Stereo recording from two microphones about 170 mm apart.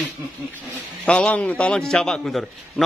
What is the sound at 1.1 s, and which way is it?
A man's voice, 5° left (ahead or behind).